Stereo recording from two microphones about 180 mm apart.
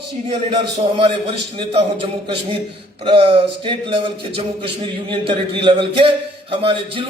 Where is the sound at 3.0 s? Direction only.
30° right (ahead or behind).